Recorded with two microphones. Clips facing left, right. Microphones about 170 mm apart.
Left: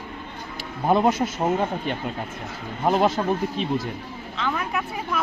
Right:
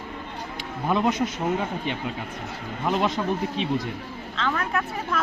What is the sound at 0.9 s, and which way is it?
Speech, 40° left (ahead or behind).